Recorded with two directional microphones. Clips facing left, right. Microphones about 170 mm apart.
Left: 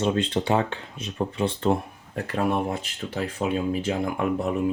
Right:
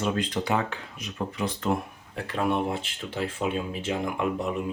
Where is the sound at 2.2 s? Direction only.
40° left (ahead or behind).